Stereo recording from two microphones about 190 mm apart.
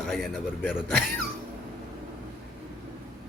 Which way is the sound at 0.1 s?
Centre (ahead or behind).